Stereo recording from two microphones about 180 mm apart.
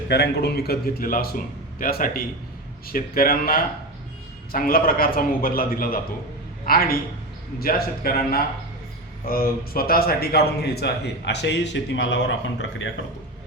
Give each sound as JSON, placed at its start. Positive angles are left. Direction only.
{"t": 0.1, "sound": "a man's voice", "side_deg": 65}